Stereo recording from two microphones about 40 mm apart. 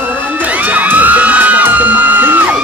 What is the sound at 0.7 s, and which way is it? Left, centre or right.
Music, right.